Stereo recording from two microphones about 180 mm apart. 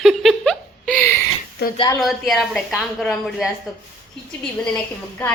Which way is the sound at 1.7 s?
25° left (ahead or behind).